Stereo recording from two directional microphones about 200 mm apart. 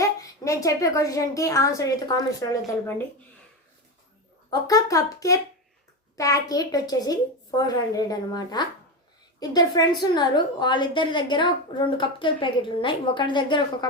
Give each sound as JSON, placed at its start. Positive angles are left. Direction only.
{"t": 0.0, "sound": "a woman's voice", "side_deg": 15}
{"t": 4.6, "sound": "a woman's voice", "side_deg": 20}